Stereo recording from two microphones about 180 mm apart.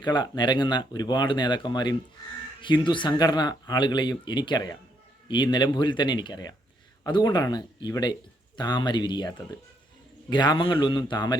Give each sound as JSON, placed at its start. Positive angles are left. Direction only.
{"t": 0.0, "sound": "speech", "side_deg": 25}